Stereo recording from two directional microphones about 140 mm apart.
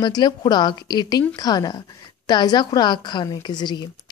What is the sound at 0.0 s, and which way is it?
A woman's voice, 30° left (ahead or behind).